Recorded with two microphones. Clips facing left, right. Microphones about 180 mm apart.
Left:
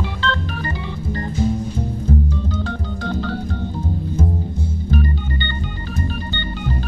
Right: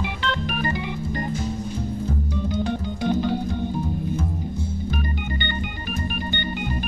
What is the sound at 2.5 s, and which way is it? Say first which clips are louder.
Organ: right 1 dB; 15° right (ahead or behind).